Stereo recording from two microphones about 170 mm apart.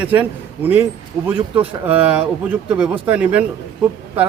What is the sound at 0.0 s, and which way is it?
Speech, 10° right (ahead or behind).